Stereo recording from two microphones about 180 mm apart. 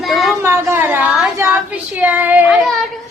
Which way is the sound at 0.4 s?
15° right (ahead or behind).